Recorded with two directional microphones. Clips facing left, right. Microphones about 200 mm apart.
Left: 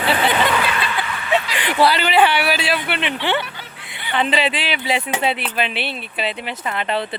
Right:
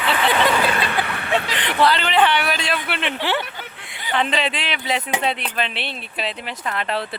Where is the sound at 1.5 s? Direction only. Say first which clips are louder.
Left 1 dB; 10° left (ahead or behind).